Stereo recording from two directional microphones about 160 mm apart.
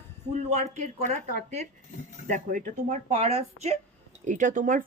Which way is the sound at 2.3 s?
50° right (ahead or behind).